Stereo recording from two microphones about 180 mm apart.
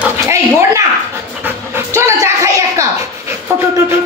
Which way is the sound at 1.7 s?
15° right (ahead or behind).